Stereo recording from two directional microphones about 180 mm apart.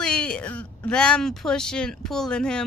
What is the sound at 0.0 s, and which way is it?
Speech, 5° left (ahead or behind).